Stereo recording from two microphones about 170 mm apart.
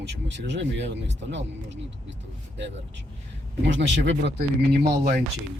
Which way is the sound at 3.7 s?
90° right.